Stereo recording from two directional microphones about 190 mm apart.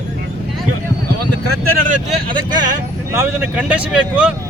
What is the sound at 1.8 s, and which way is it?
Speech, 40° right (ahead or behind).